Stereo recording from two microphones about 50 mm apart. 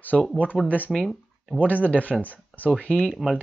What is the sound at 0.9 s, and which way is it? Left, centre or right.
Speech, centre.